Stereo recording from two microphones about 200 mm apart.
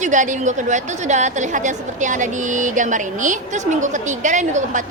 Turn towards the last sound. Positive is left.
turn(degrees=-40)  # may be behind; listen again after turning